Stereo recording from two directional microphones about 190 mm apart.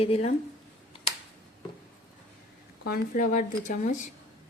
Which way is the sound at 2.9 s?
45° left (ahead or behind).